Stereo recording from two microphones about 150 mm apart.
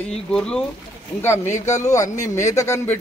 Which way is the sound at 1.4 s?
50° left (ahead or behind).